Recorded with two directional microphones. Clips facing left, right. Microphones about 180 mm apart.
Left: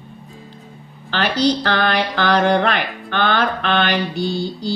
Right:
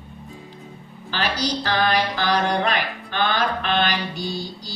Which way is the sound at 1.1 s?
60° left (ahead or behind).